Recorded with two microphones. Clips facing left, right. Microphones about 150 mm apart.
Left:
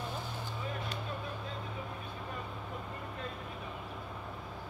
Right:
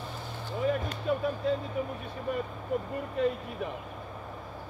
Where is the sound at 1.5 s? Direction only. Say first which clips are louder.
Right 15 dB; 80° right.